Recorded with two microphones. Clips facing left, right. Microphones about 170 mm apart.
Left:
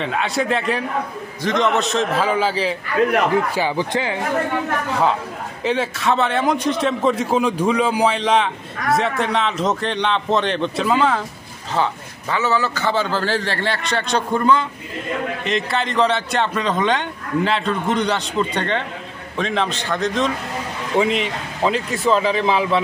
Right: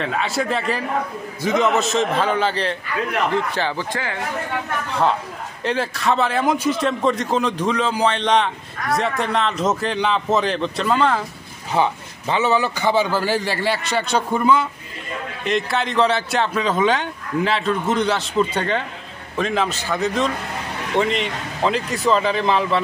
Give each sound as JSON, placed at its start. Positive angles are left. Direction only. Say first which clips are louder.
{"t": 0.0, "sound": "speech", "louder": "left 1 dB", "side_deg": 0}
{"t": 5.6, "sound": "speech", "louder": "left 2 dB", "side_deg": 0}
{"t": 11.7, "sound": "a man's voice", "louder": "right 2 dB", "side_deg": -15}